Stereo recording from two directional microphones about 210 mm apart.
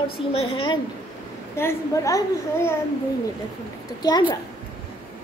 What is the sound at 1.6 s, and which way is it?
A child's voice, 15° left (ahead or behind).